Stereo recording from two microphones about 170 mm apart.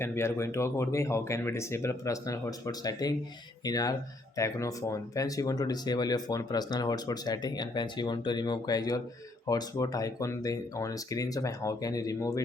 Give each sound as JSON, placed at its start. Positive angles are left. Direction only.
{"t": 0.0, "sound": "speech", "side_deg": 15}